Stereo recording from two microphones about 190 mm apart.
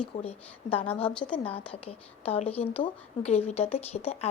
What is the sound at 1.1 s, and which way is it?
A woman's voice, 25° left (ahead or behind).